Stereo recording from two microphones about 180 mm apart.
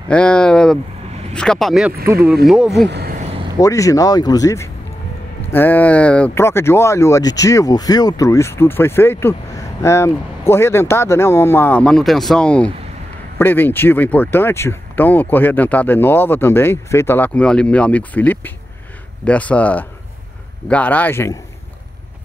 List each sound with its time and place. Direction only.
0.1 s speech: 5° left (ahead or behind)
2.9 s speech: 65° right (ahead or behind)
3.5 s speech: 20° left (ahead or behind)